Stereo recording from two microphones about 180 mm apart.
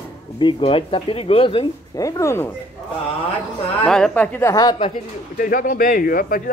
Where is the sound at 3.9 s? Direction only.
5° left (ahead or behind).